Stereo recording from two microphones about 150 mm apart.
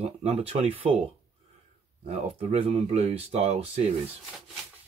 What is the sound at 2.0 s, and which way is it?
Speech, 40° right (ahead or behind).